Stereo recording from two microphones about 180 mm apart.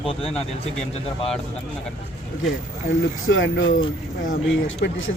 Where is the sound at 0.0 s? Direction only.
30° left (ahead or behind).